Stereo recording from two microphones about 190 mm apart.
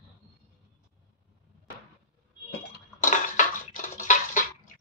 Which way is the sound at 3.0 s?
45° left (ahead or behind).